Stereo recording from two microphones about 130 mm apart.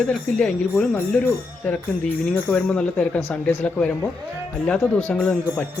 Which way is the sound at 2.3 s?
10° left (ahead or behind).